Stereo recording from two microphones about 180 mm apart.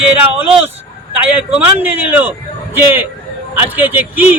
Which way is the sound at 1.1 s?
10° right (ahead or behind).